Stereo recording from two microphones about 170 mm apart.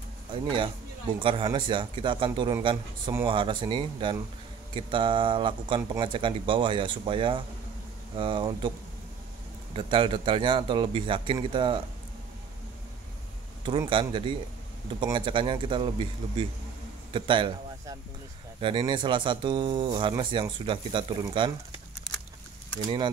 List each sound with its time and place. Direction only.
0.3 s speech: 30° right (ahead or behind)
9.8 s speech: 30° right (ahead or behind)
13.7 s a man's voice: 30° right (ahead or behind)